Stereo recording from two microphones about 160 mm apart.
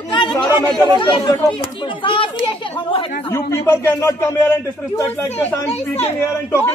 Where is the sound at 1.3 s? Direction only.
20° left (ahead or behind).